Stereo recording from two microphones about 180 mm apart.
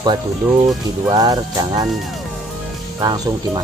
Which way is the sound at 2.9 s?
20° right (ahead or behind).